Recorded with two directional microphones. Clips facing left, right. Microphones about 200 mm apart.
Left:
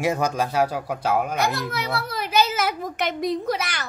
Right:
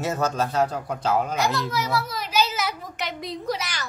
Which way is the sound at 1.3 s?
55° left (ahead or behind).